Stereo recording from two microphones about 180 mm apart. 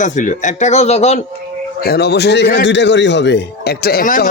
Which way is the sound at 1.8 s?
60° left (ahead or behind).